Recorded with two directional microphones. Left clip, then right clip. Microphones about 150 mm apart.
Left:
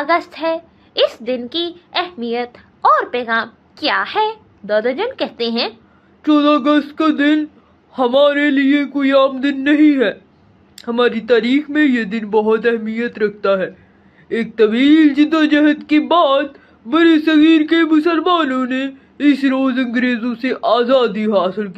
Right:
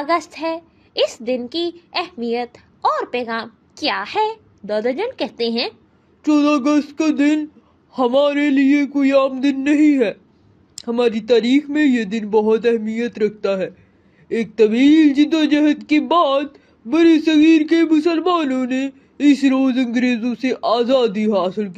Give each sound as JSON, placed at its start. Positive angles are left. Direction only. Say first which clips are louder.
{"t": 0.0, "sound": "a woman's voice", "louder": "left 3 dB", "side_deg": -50}